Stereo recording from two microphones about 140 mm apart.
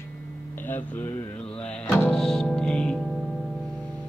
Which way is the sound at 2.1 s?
5° left (ahead or behind).